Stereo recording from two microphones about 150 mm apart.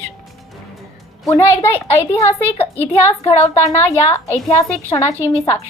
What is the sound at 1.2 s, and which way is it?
A woman's voice, 15° left (ahead or behind).